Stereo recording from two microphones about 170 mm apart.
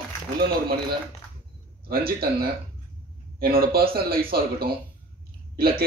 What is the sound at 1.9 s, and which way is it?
Speech, 60° right (ahead or behind).